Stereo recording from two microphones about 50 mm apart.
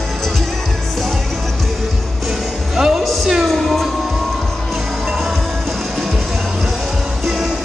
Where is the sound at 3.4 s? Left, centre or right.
Centre.